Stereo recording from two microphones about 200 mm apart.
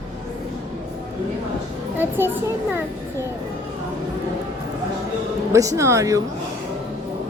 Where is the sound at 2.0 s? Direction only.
10° right (ahead or behind).